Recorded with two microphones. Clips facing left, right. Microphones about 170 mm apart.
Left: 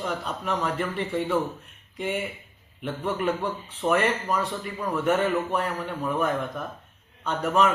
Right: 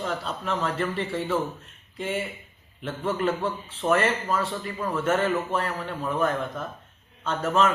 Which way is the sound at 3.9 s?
15° left (ahead or behind).